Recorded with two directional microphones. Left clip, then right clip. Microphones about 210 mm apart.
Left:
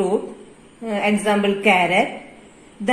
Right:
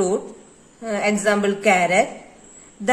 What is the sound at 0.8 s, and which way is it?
A woman's voice, 35° right (ahead or behind).